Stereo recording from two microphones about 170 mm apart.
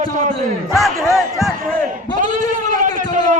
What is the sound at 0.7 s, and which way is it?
Speech, centre (ahead or behind).